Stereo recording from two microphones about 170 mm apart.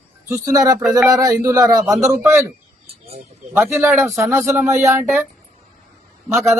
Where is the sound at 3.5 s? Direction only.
10° right (ahead or behind).